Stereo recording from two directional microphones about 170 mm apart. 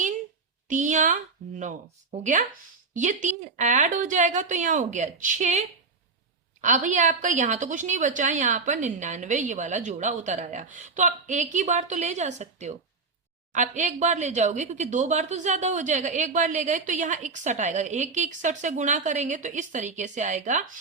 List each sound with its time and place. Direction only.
0.7 s speech: 45° right (ahead or behind)
2.9 s speech: 45° right (ahead or behind)